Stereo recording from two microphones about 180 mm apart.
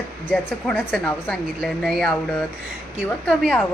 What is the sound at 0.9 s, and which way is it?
A woman's voice, 5° left (ahead or behind).